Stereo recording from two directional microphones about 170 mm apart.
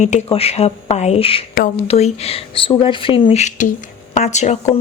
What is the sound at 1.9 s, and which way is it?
Speech, 35° left (ahead or behind).